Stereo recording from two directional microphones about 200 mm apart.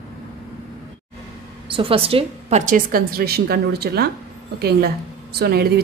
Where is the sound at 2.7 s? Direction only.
45° right (ahead or behind).